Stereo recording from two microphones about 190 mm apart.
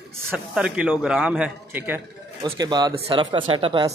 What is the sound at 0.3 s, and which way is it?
Speech, 5° right (ahead or behind).